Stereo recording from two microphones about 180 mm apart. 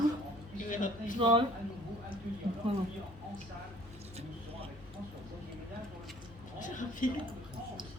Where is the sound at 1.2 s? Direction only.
30° right (ahead or behind).